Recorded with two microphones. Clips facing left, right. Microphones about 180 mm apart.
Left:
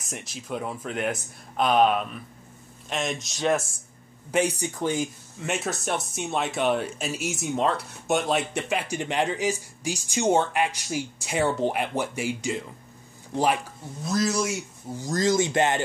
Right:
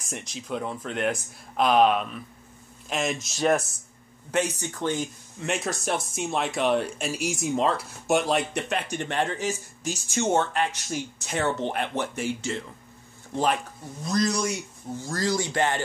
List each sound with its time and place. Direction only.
0.0 s speech: centre (ahead or behind)
4.3 s speech: 10° left (ahead or behind)
15.0 s speech: 20° left (ahead or behind)